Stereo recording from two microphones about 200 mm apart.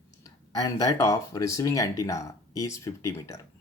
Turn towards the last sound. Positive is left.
turn(degrees=15)  # may be behind; listen again after turning